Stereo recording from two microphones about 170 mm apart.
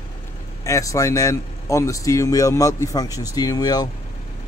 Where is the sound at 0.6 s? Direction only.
20° left (ahead or behind).